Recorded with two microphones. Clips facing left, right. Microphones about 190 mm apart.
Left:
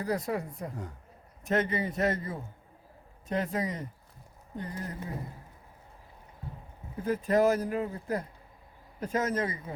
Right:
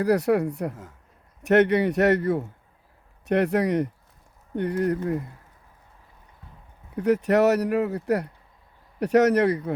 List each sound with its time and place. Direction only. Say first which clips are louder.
0.0 s speech: right 11 dB; 70° right (ahead or behind)
6.9 s speech: right 6 dB; 75° right (ahead or behind)